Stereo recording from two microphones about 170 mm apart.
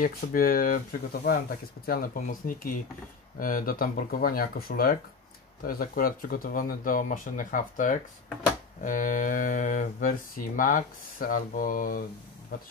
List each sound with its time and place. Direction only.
0.0 s speech: 55° left (ahead or behind)